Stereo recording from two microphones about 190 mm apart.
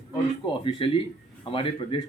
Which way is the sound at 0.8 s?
30° left (ahead or behind).